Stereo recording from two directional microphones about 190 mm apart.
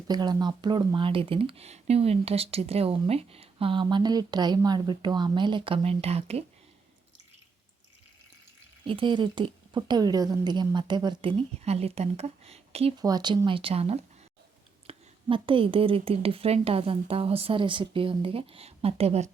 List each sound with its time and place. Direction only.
0.1 s speech: 20° right (ahead or behind)
8.8 s speech: 25° right (ahead or behind)
13.0 s speech: 20° right (ahead or behind)